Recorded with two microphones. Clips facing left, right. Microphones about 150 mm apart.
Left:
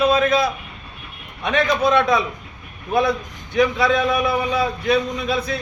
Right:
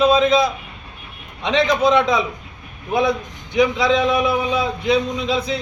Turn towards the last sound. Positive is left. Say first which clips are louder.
# right 2 dB
turn(degrees=-15)  # may be behind; listen again after turning